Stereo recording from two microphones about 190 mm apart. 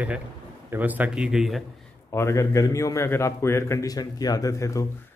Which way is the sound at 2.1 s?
15° left (ahead or behind).